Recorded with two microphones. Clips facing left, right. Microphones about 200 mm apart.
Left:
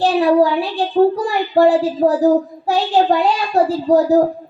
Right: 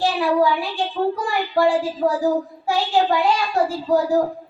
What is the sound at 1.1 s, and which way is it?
A child's voice, 35° left (ahead or behind).